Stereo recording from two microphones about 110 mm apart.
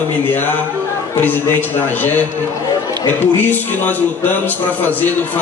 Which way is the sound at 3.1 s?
15° left (ahead or behind).